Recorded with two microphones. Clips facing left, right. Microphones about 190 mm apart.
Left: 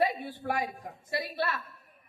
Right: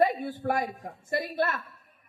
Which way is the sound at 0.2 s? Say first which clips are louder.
Right 4 dB; 45° right (ahead or behind).